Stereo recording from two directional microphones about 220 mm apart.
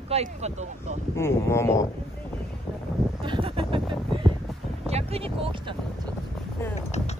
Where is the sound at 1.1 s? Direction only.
10° left (ahead or behind).